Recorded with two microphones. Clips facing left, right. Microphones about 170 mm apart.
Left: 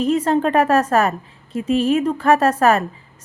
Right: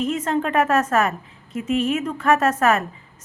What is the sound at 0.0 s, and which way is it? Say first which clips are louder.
A woman's voice: left 5 dB; 35° left (ahead or behind).